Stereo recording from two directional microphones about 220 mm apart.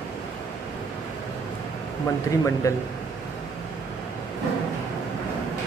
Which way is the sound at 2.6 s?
15° left (ahead or behind).